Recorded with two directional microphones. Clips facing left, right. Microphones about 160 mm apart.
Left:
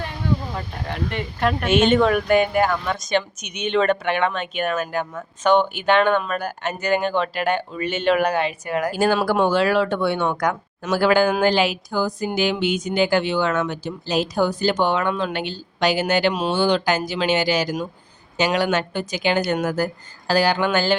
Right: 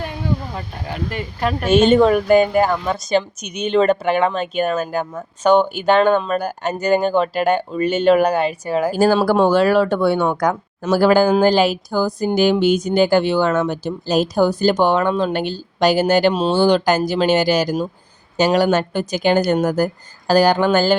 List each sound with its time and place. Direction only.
0.5 s speech: 5° right (ahead or behind)
1.7 s speech: 35° right (ahead or behind)
16.3 s speech: 25° right (ahead or behind)
16.6 s speech: 40° right (ahead or behind)